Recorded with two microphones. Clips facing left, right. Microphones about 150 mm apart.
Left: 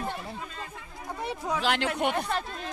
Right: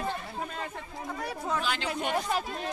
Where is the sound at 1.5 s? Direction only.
75° left (ahead or behind).